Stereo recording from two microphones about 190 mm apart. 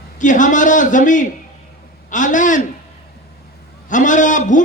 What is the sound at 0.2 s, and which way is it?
A man's voice, 40° left (ahead or behind).